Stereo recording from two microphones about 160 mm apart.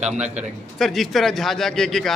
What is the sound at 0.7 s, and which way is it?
A man's voice, centre (ahead or behind).